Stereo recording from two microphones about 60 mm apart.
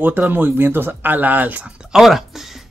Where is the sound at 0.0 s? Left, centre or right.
Right.